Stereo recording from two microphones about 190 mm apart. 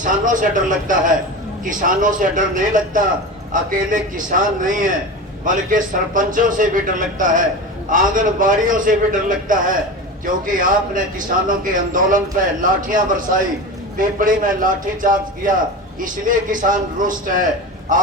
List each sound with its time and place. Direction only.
0.0 s a man's voice: 45° right (ahead or behind)